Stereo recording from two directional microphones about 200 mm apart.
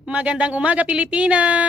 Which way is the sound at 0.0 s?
5° right (ahead or behind).